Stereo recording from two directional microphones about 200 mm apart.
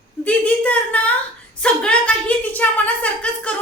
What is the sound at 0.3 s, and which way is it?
A woman's voice, 5° left (ahead or behind).